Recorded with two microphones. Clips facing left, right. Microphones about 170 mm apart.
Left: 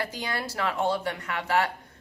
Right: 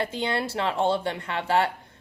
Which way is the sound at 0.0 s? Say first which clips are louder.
Right 5 dB; 25° right (ahead or behind).